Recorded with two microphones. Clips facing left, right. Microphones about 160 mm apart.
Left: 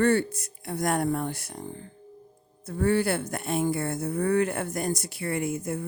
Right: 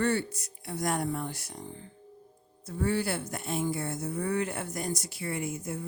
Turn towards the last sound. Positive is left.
turn(degrees=55)  # may be behind; listen again after turning